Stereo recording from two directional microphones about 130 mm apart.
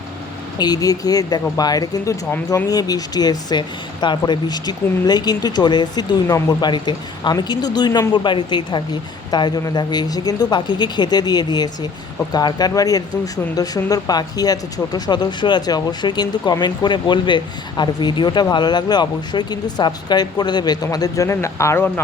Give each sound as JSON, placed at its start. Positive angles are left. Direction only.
{"t": 0.6, "sound": "speech", "side_deg": 30}